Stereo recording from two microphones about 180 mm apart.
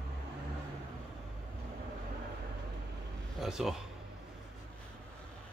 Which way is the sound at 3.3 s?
Centre (ahead or behind).